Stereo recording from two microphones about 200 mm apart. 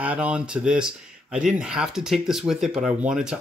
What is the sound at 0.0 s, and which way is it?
Speech, 5° right (ahead or behind).